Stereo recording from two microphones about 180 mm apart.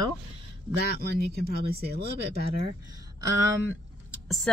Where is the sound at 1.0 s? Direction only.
60° right (ahead or behind).